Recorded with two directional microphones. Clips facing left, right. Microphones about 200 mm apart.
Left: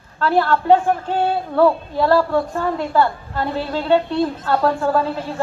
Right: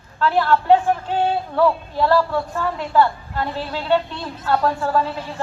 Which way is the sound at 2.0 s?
45° left (ahead or behind).